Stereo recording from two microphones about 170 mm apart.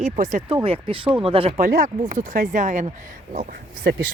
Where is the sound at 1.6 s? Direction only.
50° right (ahead or behind).